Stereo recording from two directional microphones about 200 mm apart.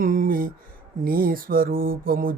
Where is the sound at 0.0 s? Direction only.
45° right (ahead or behind).